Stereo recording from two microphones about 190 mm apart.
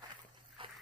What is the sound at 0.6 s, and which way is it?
Dog, 25° right (ahead or behind).